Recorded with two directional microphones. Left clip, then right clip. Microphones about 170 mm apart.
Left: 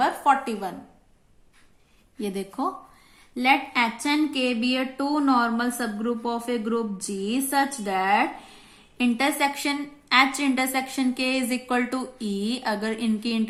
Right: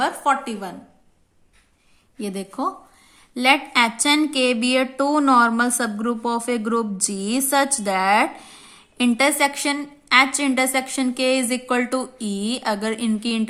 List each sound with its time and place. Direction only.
0.0 s a woman's voice: 20° right (ahead or behind)
2.1 s a woman's voice: 20° right (ahead or behind)
3.3 s a woman's voice: 35° right (ahead or behind)